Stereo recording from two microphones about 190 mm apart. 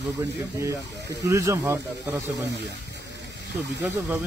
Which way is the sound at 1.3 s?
15° right (ahead or behind).